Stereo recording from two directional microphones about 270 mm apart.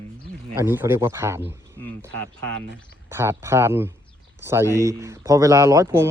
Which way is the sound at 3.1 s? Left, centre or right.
Centre.